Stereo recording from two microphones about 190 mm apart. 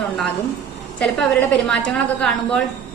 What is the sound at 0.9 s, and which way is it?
A woman's voice, 5° left (ahead or behind).